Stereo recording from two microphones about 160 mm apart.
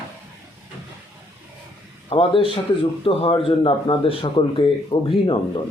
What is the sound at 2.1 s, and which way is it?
Speech, 35° left (ahead or behind).